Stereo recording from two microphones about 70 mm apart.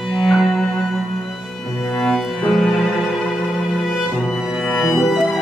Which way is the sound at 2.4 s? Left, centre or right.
Centre.